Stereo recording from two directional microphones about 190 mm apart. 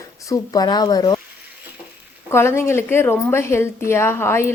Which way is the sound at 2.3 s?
15° left (ahead or behind).